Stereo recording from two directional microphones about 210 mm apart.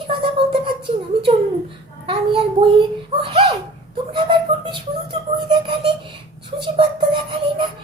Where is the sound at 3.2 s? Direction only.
25° right (ahead or behind).